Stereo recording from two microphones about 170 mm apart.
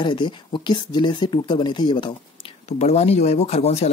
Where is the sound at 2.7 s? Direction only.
40° left (ahead or behind).